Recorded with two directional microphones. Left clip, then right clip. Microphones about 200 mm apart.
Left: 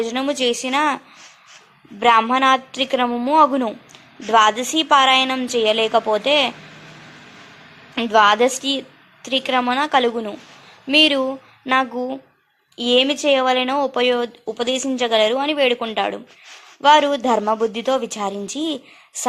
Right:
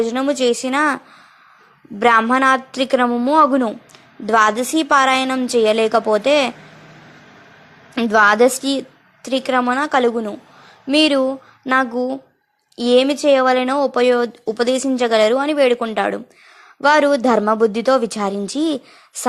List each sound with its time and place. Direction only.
0.1 s a woman's voice: 20° right (ahead or behind)
0.3 s speech: 60° right (ahead or behind)
0.6 s a woman's voice: 25° right (ahead or behind)
7.9 s a woman's voice: 25° right (ahead or behind)
8.6 s a sound: 25° right (ahead or behind)
9.4 s a woman's voice: 20° right (ahead or behind)
11.0 s a sound: 20° right (ahead or behind)
12.9 s a woman's voice: 25° right (ahead or behind)